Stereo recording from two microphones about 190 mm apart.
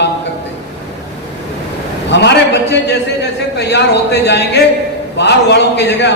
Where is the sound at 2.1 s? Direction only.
65° left (ahead or behind).